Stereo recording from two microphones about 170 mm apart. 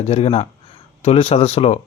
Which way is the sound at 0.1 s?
35° left (ahead or behind).